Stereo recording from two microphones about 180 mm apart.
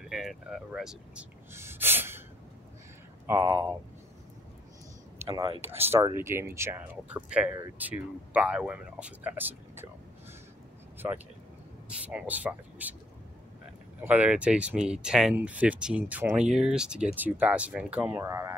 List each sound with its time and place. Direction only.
0.0 s speech: centre (ahead or behind)
1.5 s gasp: 15° right (ahead or behind)
3.3 s speech: 15° right (ahead or behind)
5.2 s speech: 25° right (ahead or behind)
5.7 s speech: 10° right (ahead or behind)
11.0 s speech: 15° right (ahead or behind)
14.0 s speech: 10° right (ahead or behind)